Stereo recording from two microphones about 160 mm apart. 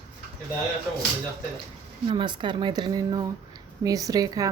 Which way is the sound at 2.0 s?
30° right (ahead or behind).